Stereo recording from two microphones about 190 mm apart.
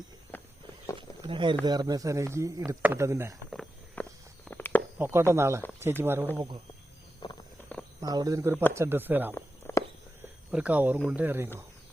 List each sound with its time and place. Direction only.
0.3 s walk: 10° left (ahead or behind)
0.9 s a sound: 25° right (ahead or behind)
1.6 s speech: 20° right (ahead or behind)
3.5 s walk: centre (ahead or behind)
4.4 s a sound: 10° left (ahead or behind)
4.9 s speech: 10° right (ahead or behind)
7.2 s a sound: 25° left (ahead or behind)
7.6 s cricket: 10° left (ahead or behind)
8.0 s speech: 20° right (ahead or behind)
9.3 s cricket: 15° left (ahead or behind)
10.5 s speech: 5° right (ahead or behind)